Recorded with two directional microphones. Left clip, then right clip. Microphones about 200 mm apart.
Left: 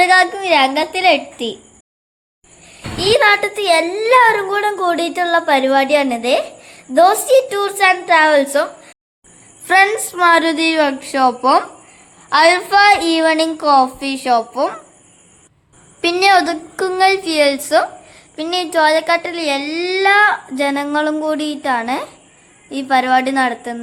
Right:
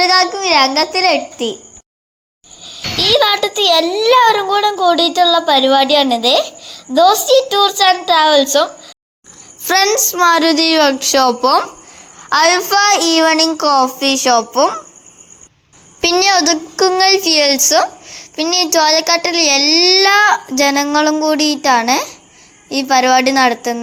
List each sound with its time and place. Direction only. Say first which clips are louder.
0.3 s a child's voice: right 2 dB; 5° left (ahead or behind)
3.2 s a woman's voice: even; 10° right (ahead or behind)
16.0 s a woman's voice: even; 20° right (ahead or behind)